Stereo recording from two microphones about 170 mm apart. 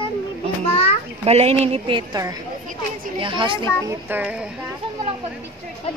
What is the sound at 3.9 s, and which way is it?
Speech, 10° right (ahead or behind).